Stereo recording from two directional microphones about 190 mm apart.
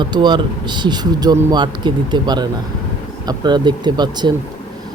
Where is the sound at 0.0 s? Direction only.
25° right (ahead or behind).